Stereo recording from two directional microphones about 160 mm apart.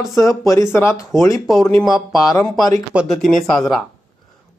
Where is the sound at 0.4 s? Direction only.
20° left (ahead or behind).